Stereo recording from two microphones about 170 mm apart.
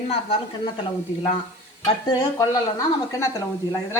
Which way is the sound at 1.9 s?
25° left (ahead or behind).